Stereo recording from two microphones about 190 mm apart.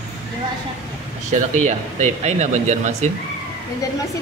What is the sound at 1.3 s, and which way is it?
Speech, 40° right (ahead or behind).